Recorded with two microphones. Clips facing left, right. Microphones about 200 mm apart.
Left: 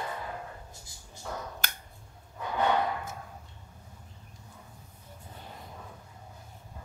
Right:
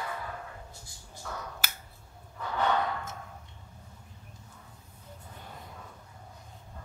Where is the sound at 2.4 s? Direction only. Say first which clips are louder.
Left 1 dB; 15° left (ahead or behind).